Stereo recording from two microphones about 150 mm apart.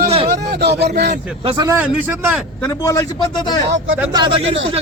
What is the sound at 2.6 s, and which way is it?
A man's voice, 20° left (ahead or behind).